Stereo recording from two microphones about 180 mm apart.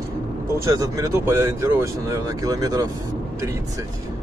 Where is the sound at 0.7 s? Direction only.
15° right (ahead or behind).